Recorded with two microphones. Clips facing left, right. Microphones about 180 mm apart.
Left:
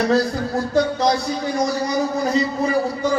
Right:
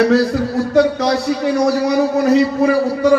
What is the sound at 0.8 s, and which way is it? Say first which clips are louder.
A man's voice: right 4 dB; 70° right (ahead or behind).